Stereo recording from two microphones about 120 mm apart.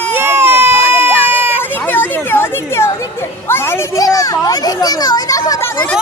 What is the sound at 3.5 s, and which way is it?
Children playing, 20° left (ahead or behind).